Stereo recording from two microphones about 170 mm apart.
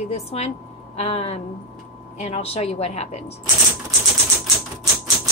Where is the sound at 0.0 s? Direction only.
35° left (ahead or behind).